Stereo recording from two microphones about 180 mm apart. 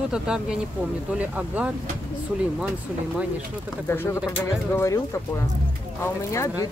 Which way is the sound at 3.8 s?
15° left (ahead or behind).